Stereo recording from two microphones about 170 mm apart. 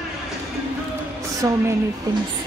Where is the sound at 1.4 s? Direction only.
20° right (ahead or behind).